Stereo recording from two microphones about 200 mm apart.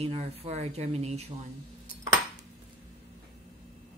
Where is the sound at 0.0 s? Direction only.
30° right (ahead or behind).